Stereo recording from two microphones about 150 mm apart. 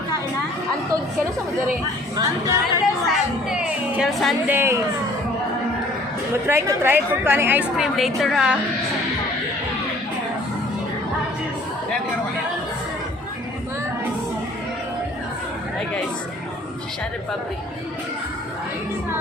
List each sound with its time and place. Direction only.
2.1 s speech: 20° right (ahead or behind)
3.5 s a woman's voice: 5° right (ahead or behind)
4.4 s a woman's voice: 15° right (ahead or behind)
6.5 s a woman's voice: 15° right (ahead or behind)
7.8 s a woman's voice: centre (ahead or behind)